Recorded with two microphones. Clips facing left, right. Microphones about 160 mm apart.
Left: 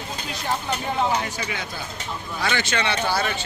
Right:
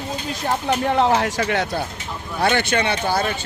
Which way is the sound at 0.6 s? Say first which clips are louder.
Right 8 dB; 70° right (ahead or behind).